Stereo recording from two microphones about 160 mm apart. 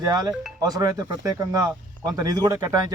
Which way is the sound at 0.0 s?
25° right (ahead or behind).